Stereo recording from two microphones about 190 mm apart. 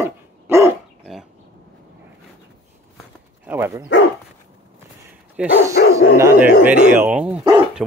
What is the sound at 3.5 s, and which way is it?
Speech, 10° right (ahead or behind).